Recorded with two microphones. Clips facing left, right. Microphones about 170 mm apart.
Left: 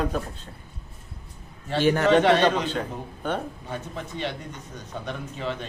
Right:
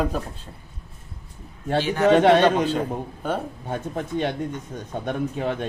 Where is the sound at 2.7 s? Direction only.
5° right (ahead or behind).